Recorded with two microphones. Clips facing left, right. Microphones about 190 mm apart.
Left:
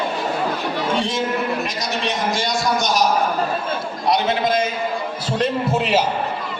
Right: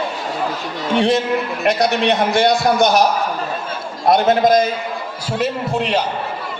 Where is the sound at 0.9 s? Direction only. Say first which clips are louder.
Right 10 dB; 60° right (ahead or behind).